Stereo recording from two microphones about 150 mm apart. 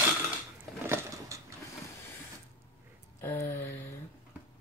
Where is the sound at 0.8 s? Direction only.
20° right (ahead or behind).